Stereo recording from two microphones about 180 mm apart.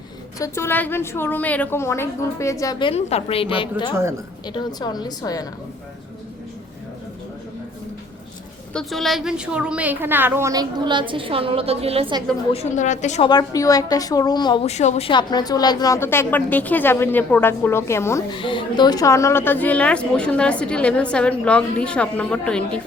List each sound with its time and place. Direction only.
0.3 s a woman's voice: 15° left (ahead or behind)
8.7 s a woman's voice: centre (ahead or behind); by 12.2 s 30° right (ahead or behind)
12.5 s a woman's voice: 40° left (ahead or behind)
13.2 s a woman's voice: 20° left (ahead or behind)
14.7 s a woman's voice: 40° left (ahead or behind); by 18.2 s 15° left (ahead or behind)
18.3 s a woman's voice: 25° left (ahead or behind); by 22.8 s 5° left (ahead or behind)